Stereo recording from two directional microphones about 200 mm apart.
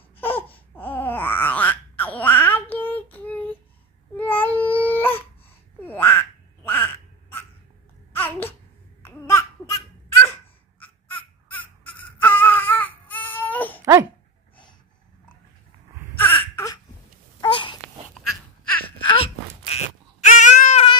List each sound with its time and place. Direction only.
0.2 s babbling: 10° left (ahead or behind)
4.2 s baby cry: 10° left (ahead or behind)
5.9 s quack: 10° left (ahead or behind)
8.1 s a sound: 10° left (ahead or behind)
9.0 s babbling: 10° left (ahead or behind)
10.8 s baby cry: 10° left (ahead or behind)
16.2 s baby cry: 10° left (ahead or behind)
17.4 s wheeze: 25° left (ahead or behind)
19.0 s a sound: 30° left (ahead or behind)